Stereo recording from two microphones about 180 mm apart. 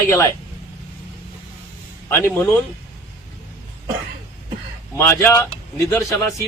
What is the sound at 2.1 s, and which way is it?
Speech, 10° left (ahead or behind).